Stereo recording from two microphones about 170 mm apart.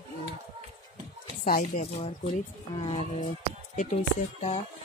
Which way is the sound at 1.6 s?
45° left (ahead or behind).